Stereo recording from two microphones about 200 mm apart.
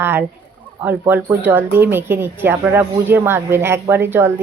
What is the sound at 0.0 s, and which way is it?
Speech, 10° right (ahead or behind).